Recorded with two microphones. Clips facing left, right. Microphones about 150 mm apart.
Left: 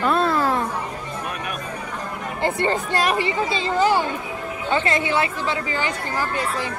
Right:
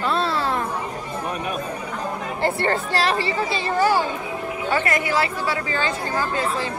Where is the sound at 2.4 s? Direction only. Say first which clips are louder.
Even; 15° left (ahead or behind).